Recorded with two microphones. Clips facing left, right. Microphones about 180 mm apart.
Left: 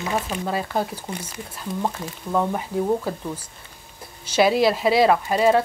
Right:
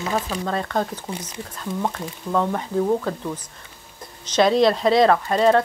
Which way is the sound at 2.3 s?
10° left (ahead or behind).